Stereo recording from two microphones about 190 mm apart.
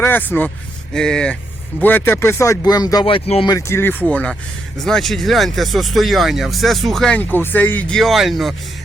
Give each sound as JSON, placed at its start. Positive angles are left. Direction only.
{"t": 0.0, "sound": "speech", "side_deg": 10}
{"t": 3.5, "sound": "speech", "side_deg": 15}